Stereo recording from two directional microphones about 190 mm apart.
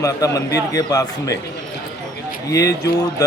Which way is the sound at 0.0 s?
15° left (ahead or behind).